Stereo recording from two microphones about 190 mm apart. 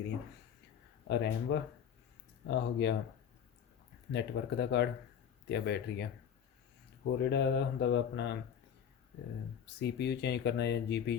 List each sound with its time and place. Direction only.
1.0 s speech: 60° left (ahead or behind)
4.1 s speech: 65° left (ahead or behind)
9.6 s speech: 65° left (ahead or behind)